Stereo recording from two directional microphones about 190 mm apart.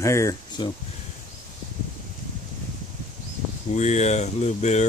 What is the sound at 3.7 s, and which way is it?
Speech, 35° left (ahead or behind).